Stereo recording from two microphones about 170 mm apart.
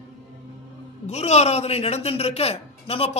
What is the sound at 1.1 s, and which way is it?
A man's voice, 40° left (ahead or behind).